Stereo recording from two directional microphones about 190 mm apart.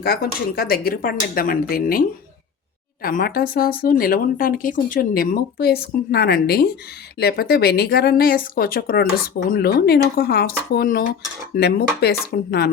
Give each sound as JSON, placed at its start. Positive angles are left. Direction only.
{"t": 0.0, "sound": "a woman's voice", "side_deg": 55}